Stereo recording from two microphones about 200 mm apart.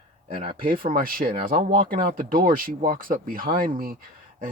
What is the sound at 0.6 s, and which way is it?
Speech, 45° right (ahead or behind).